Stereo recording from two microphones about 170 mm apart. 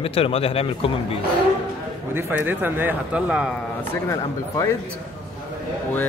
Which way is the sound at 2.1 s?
10° right (ahead or behind).